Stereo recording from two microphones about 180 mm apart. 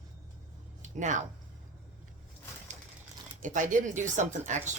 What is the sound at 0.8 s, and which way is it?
Speech, 45° right (ahead or behind).